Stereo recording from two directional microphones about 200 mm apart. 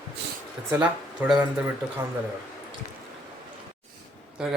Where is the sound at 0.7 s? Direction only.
5° right (ahead or behind).